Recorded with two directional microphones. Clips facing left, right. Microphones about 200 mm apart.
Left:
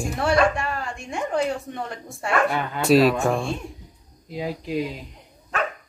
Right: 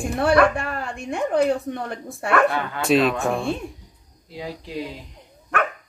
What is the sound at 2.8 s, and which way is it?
Speech, centre (ahead or behind).